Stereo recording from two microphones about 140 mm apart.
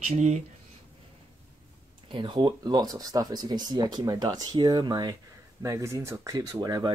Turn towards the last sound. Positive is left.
turn(degrees=-25)  # may be behind; listen again after turning